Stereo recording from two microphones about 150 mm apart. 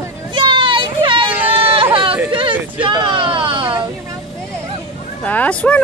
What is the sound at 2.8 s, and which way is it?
Speech, 30° right (ahead or behind).